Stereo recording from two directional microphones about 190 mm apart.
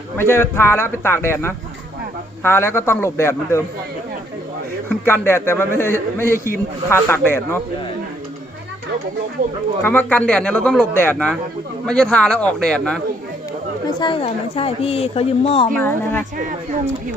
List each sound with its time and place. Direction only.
0.2 s a man's voice: 10° left (ahead or behind)
4.9 s a man's voice: 10° left (ahead or behind)
9.8 s a man's voice: 10° left (ahead or behind)
14.0 s a woman's voice: 30° left (ahead or behind)
15.7 s a man's voice: 10° left (ahead or behind)